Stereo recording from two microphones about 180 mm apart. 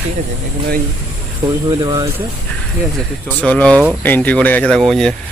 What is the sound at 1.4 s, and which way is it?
Speech, 15° right (ahead or behind).